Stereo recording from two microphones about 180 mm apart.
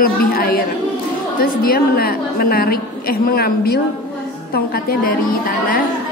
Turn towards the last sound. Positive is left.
turn(degrees=55)  # may be behind; listen again after turning